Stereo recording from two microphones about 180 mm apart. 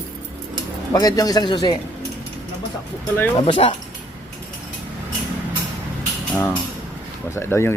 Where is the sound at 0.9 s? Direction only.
20° left (ahead or behind).